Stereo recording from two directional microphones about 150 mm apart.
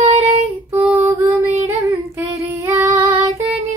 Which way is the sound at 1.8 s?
20° right (ahead or behind).